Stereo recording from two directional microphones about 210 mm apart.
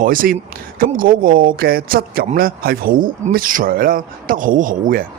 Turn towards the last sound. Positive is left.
turn(degrees=-40)  # may be behind; listen again after turning